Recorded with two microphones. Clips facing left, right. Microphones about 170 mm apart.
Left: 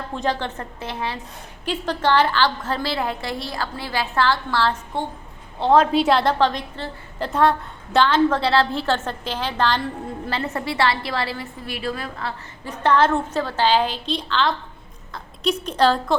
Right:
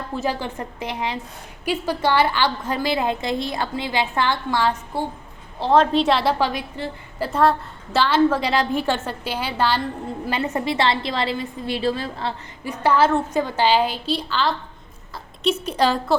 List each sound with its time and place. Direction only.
0.1 s a woman's voice: 10° right (ahead or behind)
5.5 s a woman's voice: centre (ahead or behind)
10.2 s a woman's voice: 20° right (ahead or behind)
12.6 s a woman's voice: 10° right (ahead or behind)
15.6 s a woman's voice: 10° right (ahead or behind)